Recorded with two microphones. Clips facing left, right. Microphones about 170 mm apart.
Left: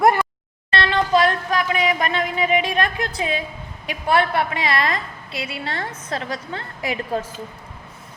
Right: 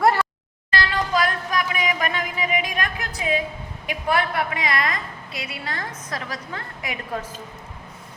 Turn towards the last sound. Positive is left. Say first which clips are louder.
# left 5 dB
turn(degrees=30)  # may be behind; listen again after turning